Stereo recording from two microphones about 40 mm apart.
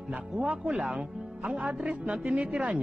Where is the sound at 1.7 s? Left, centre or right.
Right.